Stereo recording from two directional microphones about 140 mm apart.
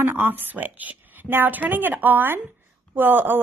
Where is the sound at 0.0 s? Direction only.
15° right (ahead or behind).